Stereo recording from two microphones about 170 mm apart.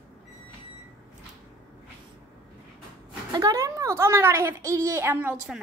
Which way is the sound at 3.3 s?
20° right (ahead or behind).